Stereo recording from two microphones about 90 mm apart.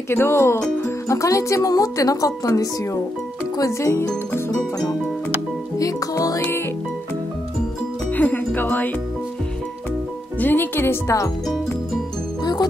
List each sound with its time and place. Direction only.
0.1 s speech: 25° left (ahead or behind)
5.8 s speech: 40° left (ahead or behind)
8.1 s music: 20° left (ahead or behind)
10.4 s speech: 20° left (ahead or behind)